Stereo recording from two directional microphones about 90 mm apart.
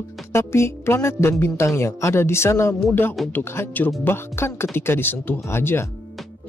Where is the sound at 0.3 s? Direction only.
30° left (ahead or behind).